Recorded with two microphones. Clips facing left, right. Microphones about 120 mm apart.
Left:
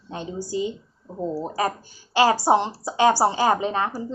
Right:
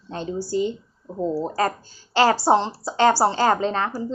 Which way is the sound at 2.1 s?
15° left (ahead or behind).